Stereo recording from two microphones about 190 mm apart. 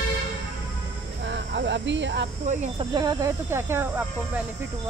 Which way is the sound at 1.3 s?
65° right (ahead or behind).